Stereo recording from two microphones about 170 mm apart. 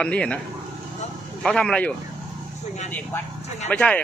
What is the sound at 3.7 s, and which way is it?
Speech, 10° left (ahead or behind).